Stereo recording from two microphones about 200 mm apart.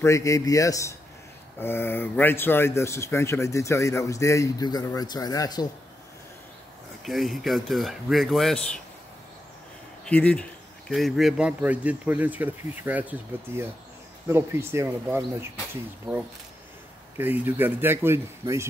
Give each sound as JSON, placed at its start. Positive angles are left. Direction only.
{"t": 0.0, "sound": "speech", "side_deg": 15}
{"t": 7.1, "sound": "speech", "side_deg": 0}
{"t": 10.0, "sound": "speech", "side_deg": 5}